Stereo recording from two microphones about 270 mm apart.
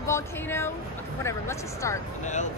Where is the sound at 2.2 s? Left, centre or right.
Left.